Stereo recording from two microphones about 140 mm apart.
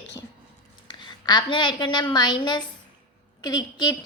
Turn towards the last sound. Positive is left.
turn(degrees=30)  # may be behind; listen again after turning